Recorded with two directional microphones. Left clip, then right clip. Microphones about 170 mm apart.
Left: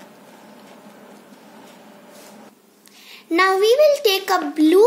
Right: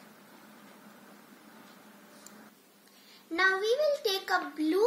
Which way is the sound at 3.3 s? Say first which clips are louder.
Left 12 dB; 70° left (ahead or behind).